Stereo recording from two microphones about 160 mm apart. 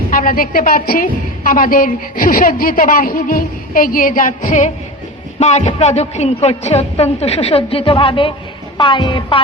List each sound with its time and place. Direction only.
0.1 s a woman's voice: 60° left (ahead or behind); by 9.4 s 30° left (ahead or behind)